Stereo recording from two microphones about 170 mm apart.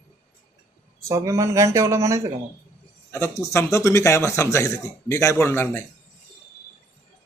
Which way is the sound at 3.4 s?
15° left (ahead or behind).